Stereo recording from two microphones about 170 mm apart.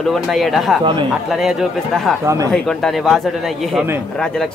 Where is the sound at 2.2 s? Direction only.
15° right (ahead or behind).